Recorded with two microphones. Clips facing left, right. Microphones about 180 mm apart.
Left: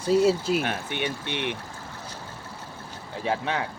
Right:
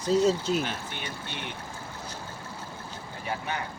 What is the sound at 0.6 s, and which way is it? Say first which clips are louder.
Speech: left 6 dB; 65° left (ahead or behind).